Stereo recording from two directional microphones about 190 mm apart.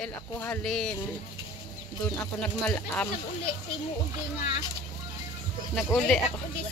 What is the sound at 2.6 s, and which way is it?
Speech, 5° left (ahead or behind).